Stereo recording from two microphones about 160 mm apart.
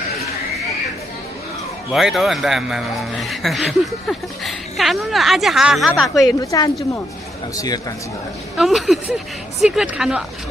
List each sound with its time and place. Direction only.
1.9 s speech: centre (ahead or behind)
6.4 s a woman's voice: 20° left (ahead or behind)
8.5 s speech: centre (ahead or behind)